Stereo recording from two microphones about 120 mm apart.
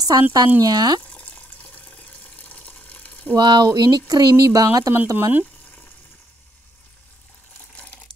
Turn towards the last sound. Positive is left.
turn(degrees=10)  # may be behind; listen again after turning